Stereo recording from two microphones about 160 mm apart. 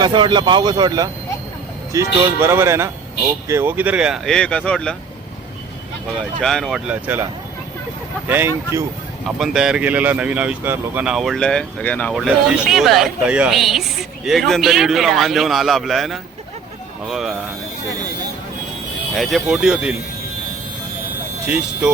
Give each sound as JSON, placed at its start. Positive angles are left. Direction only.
{"t": 0.0, "sound": "speech", "side_deg": -30}
{"t": 6.1, "sound": "speech", "side_deg": 5}
{"t": 8.3, "sound": "speech", "side_deg": -15}
{"t": 9.4, "sound": "speech", "side_deg": -5}
{"t": 19.1, "sound": "speech", "side_deg": 0}
{"t": 21.4, "sound": "speech", "side_deg": -5}